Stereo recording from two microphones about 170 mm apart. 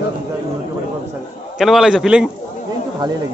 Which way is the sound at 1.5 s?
Centre (ahead or behind).